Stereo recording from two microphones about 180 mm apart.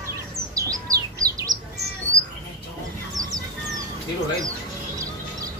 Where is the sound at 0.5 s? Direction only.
20° right (ahead or behind).